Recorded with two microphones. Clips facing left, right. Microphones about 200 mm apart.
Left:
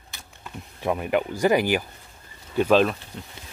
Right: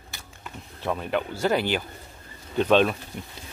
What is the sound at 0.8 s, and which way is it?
Speech, 10° left (ahead or behind).